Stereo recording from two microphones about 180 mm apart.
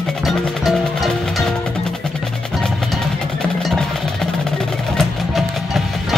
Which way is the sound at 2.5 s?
Centre (ahead or behind).